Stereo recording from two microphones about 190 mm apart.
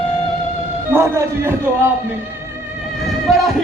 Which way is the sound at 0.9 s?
10° right (ahead or behind).